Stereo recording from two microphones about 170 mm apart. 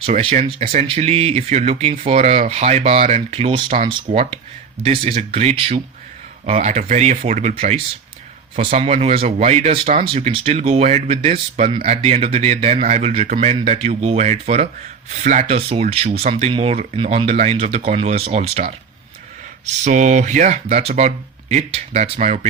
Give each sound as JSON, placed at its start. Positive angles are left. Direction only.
{"t": 0.0, "sound": "speech", "side_deg": -35}
{"t": 13.2, "sound": "speech", "side_deg": -50}